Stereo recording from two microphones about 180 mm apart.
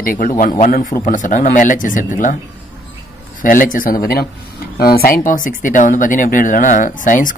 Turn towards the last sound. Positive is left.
turn(degrees=45)  # may be behind; listen again after turning